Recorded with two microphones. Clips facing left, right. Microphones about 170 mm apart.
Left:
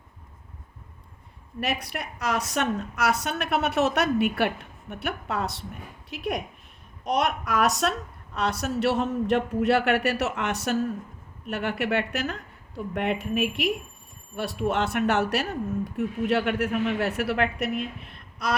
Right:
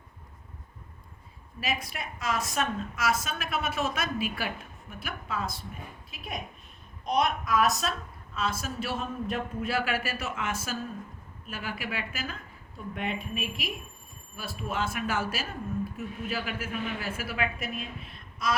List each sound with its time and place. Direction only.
1.6 s speech: 65° left (ahead or behind)